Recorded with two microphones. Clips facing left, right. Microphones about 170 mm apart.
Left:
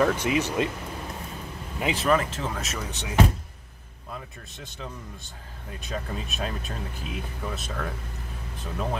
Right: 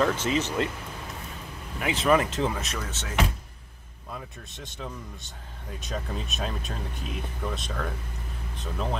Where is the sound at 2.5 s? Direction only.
Centre (ahead or behind).